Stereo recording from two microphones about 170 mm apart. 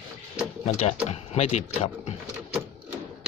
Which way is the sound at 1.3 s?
40° left (ahead or behind).